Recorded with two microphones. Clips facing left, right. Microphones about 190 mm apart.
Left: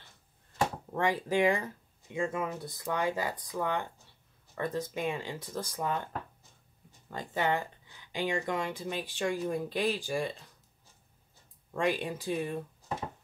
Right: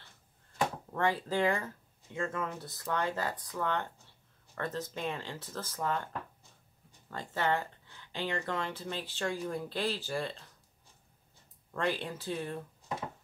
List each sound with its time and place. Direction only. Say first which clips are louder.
0.9 s speech: left 2 dB; 15° left (ahead or behind)
7.1 s speech: left 1 dB; 15° left (ahead or behind)
11.7 s speech: left 3 dB; 15° left (ahead or behind)